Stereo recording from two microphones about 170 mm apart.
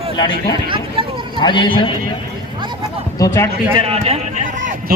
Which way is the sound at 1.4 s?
30° left (ahead or behind).